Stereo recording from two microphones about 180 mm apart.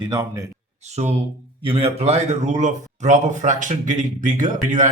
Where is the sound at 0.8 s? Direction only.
40° right (ahead or behind).